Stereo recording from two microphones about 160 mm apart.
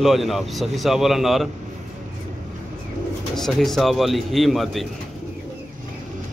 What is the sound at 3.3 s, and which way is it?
Speech, centre (ahead or behind).